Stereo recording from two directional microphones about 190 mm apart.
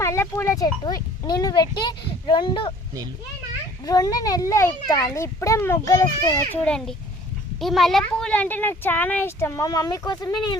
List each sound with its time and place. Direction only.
0.0 s a child's voice: 15° left (ahead or behind)
3.8 s a child's voice: 20° left (ahead or behind)